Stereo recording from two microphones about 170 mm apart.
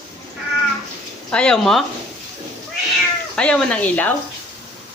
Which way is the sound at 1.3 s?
5° left (ahead or behind).